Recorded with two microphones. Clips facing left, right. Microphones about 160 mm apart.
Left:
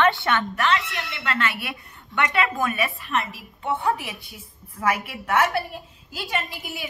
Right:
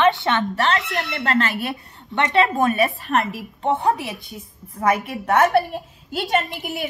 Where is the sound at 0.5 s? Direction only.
40° right (ahead or behind).